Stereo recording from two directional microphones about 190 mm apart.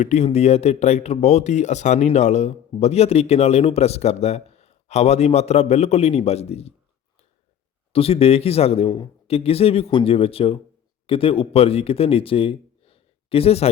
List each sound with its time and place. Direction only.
0.0 s speech: 35° left (ahead or behind)
7.9 s speech: 30° left (ahead or behind)